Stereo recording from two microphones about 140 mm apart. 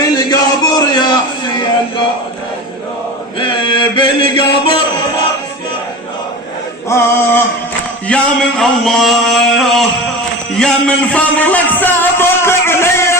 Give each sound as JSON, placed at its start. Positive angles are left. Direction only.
{"t": 0.2, "sound": "chant", "side_deg": 25}
{"t": 3.3, "sound": "chant", "side_deg": 35}
{"t": 6.8, "sound": "male singing", "side_deg": 20}
{"t": 8.0, "sound": "a sound", "side_deg": 5}
{"t": 10.5, "sound": "music", "side_deg": 5}